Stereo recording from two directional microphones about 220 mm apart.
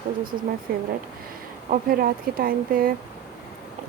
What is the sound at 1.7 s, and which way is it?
Speech, 40° right (ahead or behind).